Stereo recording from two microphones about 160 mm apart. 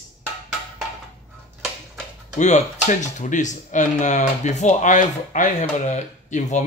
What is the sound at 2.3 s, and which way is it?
Speech, 45° left (ahead or behind).